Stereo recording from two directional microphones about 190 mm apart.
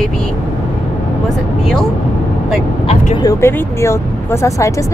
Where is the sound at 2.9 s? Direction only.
35° left (ahead or behind).